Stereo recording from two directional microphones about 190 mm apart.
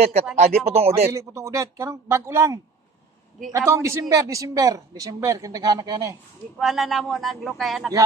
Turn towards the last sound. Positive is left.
turn(degrees=0)  # may be behind; listen again after turning